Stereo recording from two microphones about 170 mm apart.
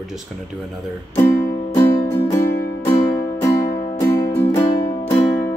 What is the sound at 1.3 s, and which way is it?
Music, 55° left (ahead or behind).